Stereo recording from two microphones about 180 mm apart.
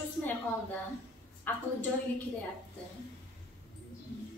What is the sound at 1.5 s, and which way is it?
Speech, 10° left (ahead or behind).